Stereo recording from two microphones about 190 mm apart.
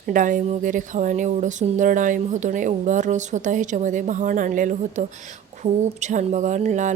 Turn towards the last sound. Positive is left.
turn(degrees=-40)  # may be behind; listen again after turning